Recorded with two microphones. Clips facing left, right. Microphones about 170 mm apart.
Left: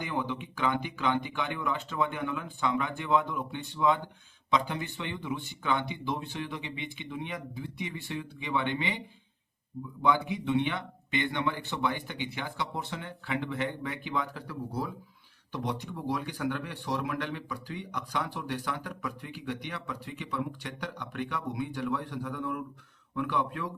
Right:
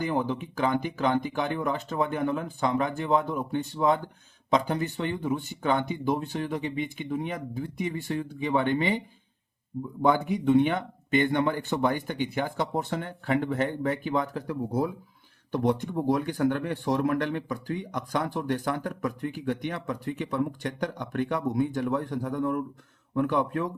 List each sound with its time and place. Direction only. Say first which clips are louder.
0.0 s speech: right 6 dB; 40° right (ahead or behind)
10.0 s speech: right 4 dB; 45° right (ahead or behind)